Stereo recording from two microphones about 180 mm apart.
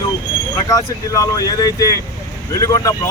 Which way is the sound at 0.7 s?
20° left (ahead or behind).